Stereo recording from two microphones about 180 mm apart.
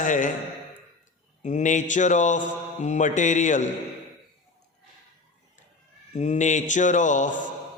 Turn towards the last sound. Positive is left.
turn(degrees=45)  # may be behind; listen again after turning